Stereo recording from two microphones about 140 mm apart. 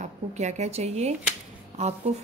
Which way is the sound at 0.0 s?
55° right (ahead or behind).